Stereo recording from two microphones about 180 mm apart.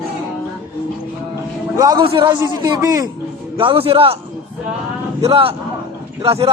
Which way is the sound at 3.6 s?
30° right (ahead or behind).